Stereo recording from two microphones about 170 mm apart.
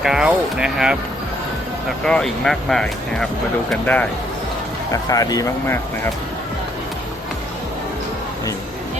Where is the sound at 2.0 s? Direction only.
5° left (ahead or behind).